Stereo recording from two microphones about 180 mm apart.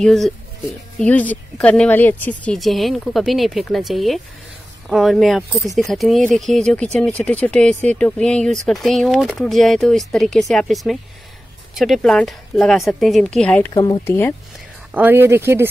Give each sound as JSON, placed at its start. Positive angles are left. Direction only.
{"t": 0.0, "sound": "speech", "side_deg": 0}
{"t": 13.7, "sound": "speech", "side_deg": 25}
{"t": 15.0, "sound": "speech", "side_deg": -10}